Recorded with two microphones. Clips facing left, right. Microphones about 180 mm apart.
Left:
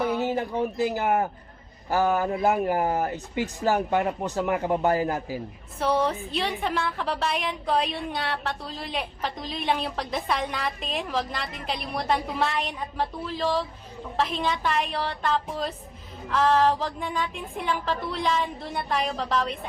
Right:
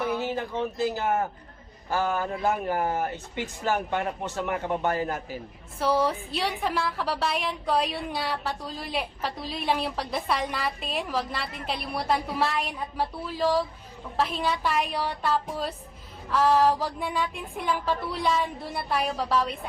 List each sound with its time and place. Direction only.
0.0 s a man's voice: 15° left (ahead or behind)
3.7 s speech: 35° left (ahead or behind)
4.4 s speech: 20° left (ahead or behind)
5.8 s a woman's voice: 5° right (ahead or behind)